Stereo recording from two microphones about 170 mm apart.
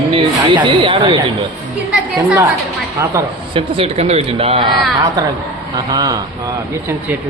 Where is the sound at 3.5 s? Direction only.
35° right (ahead or behind); by 6.2 s 20° right (ahead or behind).